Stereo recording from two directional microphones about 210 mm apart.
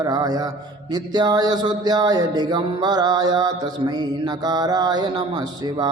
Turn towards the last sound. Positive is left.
turn(degrees=-20)  # may be behind; listen again after turning